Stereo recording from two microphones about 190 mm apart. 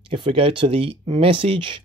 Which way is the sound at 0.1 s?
30° right (ahead or behind).